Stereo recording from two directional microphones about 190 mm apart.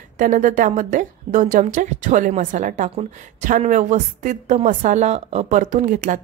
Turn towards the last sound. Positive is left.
turn(degrees=-45)  # may be behind; listen again after turning